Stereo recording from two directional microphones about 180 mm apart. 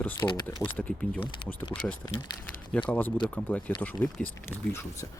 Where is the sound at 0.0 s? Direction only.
10° left (ahead or behind).